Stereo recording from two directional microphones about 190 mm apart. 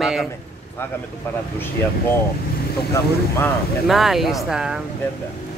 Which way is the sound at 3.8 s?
Centre (ahead or behind).